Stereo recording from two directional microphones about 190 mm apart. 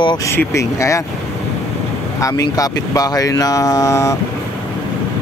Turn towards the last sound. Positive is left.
turn(degrees=15)  # may be behind; listen again after turning